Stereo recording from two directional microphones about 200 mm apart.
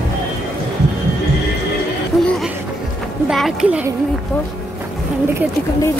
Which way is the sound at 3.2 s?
5° right (ahead or behind).